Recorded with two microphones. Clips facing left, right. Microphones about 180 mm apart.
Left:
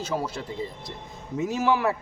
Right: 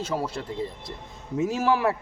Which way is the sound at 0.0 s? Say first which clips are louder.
Even; centre (ahead or behind).